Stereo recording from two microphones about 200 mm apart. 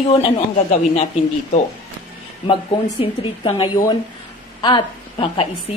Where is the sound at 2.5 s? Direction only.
25° left (ahead or behind).